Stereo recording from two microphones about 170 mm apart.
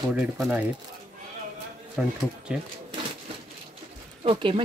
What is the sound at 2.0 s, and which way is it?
Speech, 5° right (ahead or behind).